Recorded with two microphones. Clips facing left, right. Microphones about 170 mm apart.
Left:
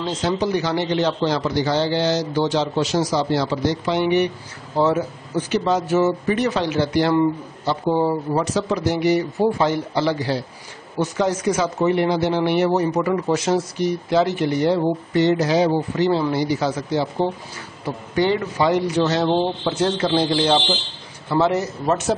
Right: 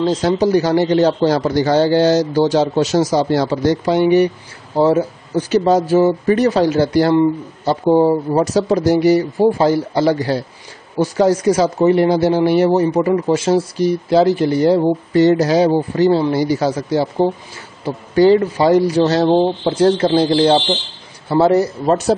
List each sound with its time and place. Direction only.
0.0 s speech: 35° right (ahead or behind)
8.0 s speech: 25° right (ahead or behind)
8.5 s speech: 40° right (ahead or behind)